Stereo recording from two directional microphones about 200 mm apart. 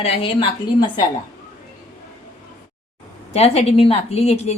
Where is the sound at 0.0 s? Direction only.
25° left (ahead or behind).